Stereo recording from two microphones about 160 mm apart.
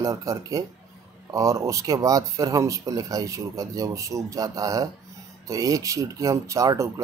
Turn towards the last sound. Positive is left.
turn(degrees=-20)  # may be behind; listen again after turning